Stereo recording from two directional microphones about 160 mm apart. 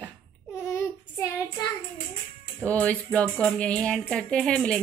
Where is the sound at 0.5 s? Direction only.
15° left (ahead or behind).